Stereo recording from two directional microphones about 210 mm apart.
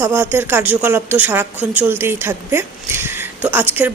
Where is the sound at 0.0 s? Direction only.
10° right (ahead or behind).